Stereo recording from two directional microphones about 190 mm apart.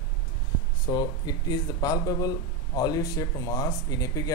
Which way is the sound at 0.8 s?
25° left (ahead or behind).